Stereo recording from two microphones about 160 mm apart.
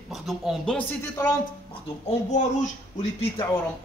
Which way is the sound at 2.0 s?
50° left (ahead or behind).